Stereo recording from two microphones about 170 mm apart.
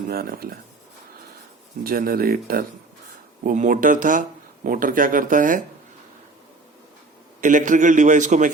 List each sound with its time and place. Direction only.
0.1 s speech: 60° right (ahead or behind)
1.8 s speech: 60° right (ahead or behind)
3.4 s speech: 50° right (ahead or behind)
7.4 s speech: 50° right (ahead or behind)